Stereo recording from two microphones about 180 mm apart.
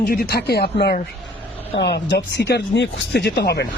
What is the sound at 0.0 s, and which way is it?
Speech, 60° left (ahead or behind).